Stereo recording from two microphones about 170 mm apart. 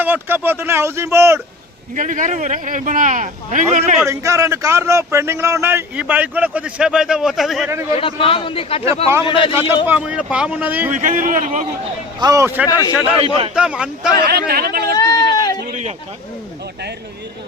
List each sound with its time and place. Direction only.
0.0 s speech: 10° right (ahead or behind)
2.0 s speech: 50° right (ahead or behind)
4.0 s speech: 15° right (ahead or behind); by 7.7 s centre (ahead or behind)
7.7 s speech: 15° right (ahead or behind)
7.9 s a man's voice: 35° left (ahead or behind)
9.8 s speech: 10° right (ahead or behind)
10.9 s speech: 50° right (ahead or behind)
12.2 s a man's voice: 20° right (ahead or behind)
12.6 s a man's voice: 20° left (ahead or behind)
13.6 s speech: 5° right (ahead or behind)
14.3 s speech: 65° right (ahead or behind)
14.9 s a sound: 20° left (ahead or behind)